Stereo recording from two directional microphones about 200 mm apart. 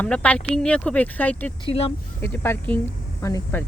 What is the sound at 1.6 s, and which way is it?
Speech, 30° left (ahead or behind).